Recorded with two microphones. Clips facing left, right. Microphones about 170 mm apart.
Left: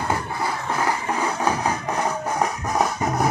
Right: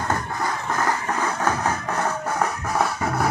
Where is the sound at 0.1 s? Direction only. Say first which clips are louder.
Right 1 dB; 10° left (ahead or behind).